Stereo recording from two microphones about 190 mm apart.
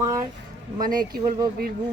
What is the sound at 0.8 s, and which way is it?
Speech, 45° right (ahead or behind).